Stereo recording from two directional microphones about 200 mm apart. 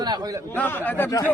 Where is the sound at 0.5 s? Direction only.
10° left (ahead or behind).